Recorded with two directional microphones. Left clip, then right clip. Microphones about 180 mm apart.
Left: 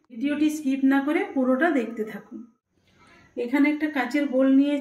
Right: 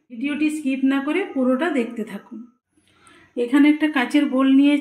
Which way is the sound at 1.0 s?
50° right (ahead or behind).